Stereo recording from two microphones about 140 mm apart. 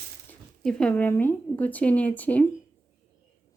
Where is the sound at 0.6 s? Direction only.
5° left (ahead or behind).